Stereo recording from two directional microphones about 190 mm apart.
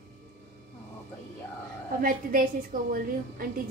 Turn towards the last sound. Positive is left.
turn(degrees=-50)  # may be behind; listen again after turning